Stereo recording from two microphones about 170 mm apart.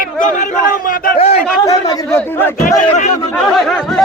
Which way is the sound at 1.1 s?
40° left (ahead or behind).